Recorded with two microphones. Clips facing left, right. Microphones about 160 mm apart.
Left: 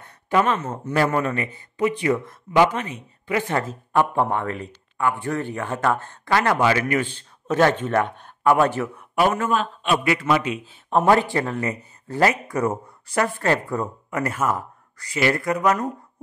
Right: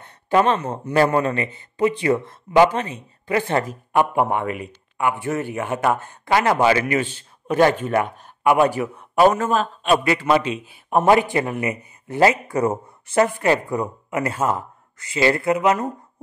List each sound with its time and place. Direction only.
0.0 s a sound: 30° right (ahead or behind)
0.9 s a man's voice: 30° right (ahead or behind)
3.5 s speech: 15° right (ahead or behind)
7.2 s speech: 10° right (ahead or behind)
8.9 s a man's voice: 30° right (ahead or behind)
10.6 s speech: 10° right (ahead or behind)